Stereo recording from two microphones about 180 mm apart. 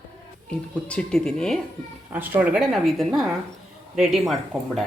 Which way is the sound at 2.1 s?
10° right (ahead or behind).